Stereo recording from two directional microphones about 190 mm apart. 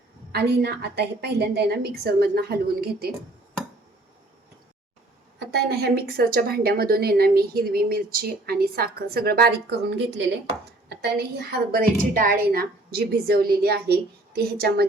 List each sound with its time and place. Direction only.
0.3 s a woman's voice: 60° right (ahead or behind)
5.4 s a woman's voice: 65° right (ahead or behind)